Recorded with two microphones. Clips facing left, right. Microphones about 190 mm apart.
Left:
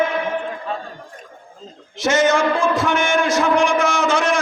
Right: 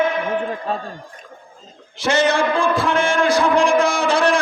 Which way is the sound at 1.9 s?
30° right (ahead or behind).